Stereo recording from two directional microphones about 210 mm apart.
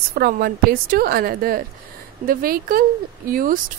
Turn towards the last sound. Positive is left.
turn(degrees=-40)  # may be behind; listen again after turning